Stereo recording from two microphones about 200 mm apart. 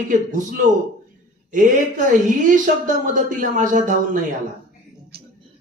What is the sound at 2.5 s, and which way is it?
A man's voice, 40° right (ahead or behind).